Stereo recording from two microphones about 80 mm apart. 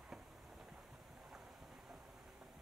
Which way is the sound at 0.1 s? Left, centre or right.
Centre.